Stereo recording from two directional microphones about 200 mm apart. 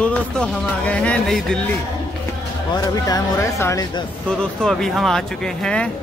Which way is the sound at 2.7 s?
20° left (ahead or behind).